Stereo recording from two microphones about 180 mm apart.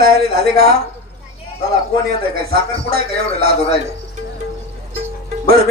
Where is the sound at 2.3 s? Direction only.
55° right (ahead or behind).